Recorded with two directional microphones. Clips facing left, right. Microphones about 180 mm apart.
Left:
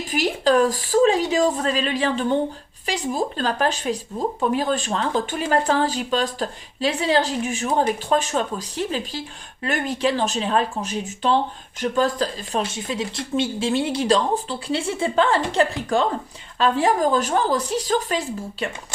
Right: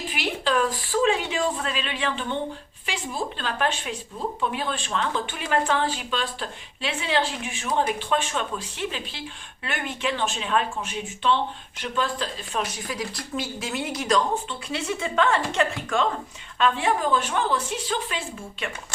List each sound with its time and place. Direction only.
0.1 s speech: 40° left (ahead or behind)
12.6 s speech: 25° left (ahead or behind); by 18.2 s 40° left (ahead or behind)